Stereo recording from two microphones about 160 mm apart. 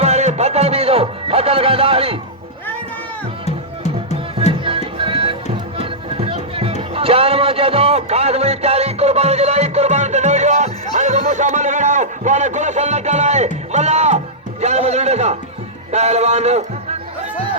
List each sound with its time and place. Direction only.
0.0 s music: 45° right (ahead or behind)
3.4 s music: 45° left (ahead or behind)
4.6 s music: 35° right (ahead or behind)
10.9 s a sound: 50° right (ahead or behind)
13.7 s music: 45° right (ahead or behind)
14.6 s a sound: 45° right (ahead or behind)
15.9 s speech: 45° right (ahead or behind)